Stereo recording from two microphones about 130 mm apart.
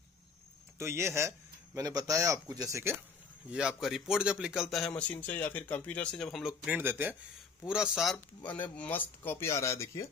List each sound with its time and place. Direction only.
0.7 s a man's voice: 20° right (ahead or behind)
3.4 s a man's voice: 5° right (ahead or behind)
8.5 s speech: 10° left (ahead or behind)